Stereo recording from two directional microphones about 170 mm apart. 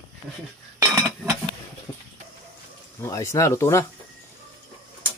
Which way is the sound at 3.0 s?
15° left (ahead or behind).